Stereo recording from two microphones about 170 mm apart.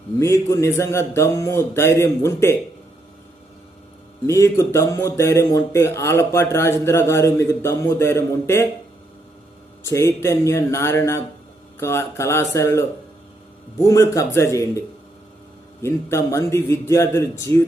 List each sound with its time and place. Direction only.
0.2 s speech: 15° left (ahead or behind)
4.3 s speech: 20° left (ahead or behind)
9.8 s speech: 15° left (ahead or behind)
13.8 s speech: 20° left (ahead or behind)